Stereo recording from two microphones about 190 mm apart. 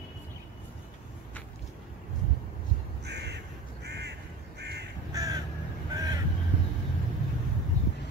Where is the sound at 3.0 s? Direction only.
60° right (ahead or behind).